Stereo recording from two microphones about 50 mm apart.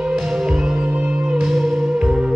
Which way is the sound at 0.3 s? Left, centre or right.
Centre.